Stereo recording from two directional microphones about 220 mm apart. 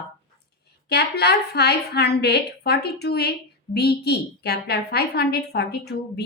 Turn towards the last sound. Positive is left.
turn(degrees=50)  # may be behind; listen again after turning